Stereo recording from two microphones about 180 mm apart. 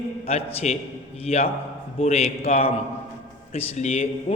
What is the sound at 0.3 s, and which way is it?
A man's voice, 35° left (ahead or behind).